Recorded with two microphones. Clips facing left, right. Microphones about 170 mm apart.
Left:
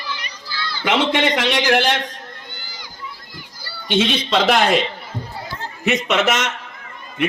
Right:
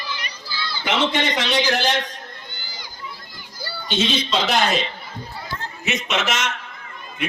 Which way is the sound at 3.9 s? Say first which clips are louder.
Left 4 dB; 55° left (ahead or behind).